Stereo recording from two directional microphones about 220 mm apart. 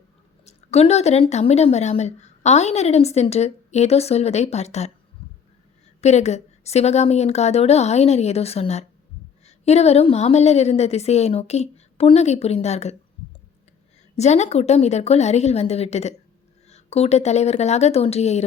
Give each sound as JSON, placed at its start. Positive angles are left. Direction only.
{"t": 0.4, "sound": "speech", "side_deg": 30}
{"t": 6.0, "sound": "speech", "side_deg": 30}
{"t": 14.2, "sound": "speech", "side_deg": 30}